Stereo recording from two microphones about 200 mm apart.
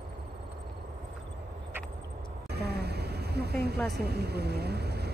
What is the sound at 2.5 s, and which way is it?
Speech, 55° right (ahead or behind).